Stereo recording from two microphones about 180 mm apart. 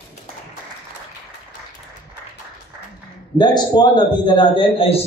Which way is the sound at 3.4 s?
25° left (ahead or behind).